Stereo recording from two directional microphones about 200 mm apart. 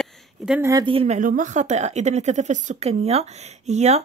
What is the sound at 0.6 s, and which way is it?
Speech, 20° right (ahead or behind).